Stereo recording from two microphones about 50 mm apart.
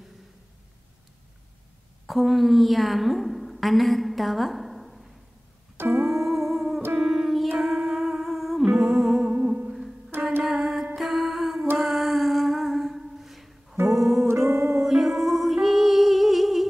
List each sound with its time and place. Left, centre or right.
2.0 s a woman's voice: centre
5.8 s keyboard: right
6.0 s music: centre
9.2 s music: right
9.7 s music: centre
11.8 s a sound: centre
13.8 s music: centre
14.1 s music: right
14.5 s music: right
14.8 s music: centre